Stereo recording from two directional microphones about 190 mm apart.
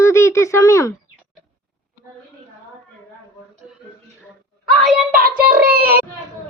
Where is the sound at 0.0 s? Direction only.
15° left (ahead or behind).